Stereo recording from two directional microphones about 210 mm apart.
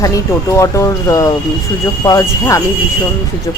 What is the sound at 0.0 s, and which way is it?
Speech, 15° left (ahead or behind).